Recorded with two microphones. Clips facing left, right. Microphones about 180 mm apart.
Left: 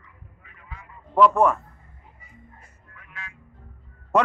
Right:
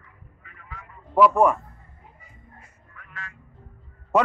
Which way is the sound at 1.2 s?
10° right (ahead or behind).